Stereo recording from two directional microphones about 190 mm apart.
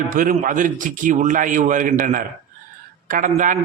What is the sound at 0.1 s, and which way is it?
A man's voice, 45° right (ahead or behind).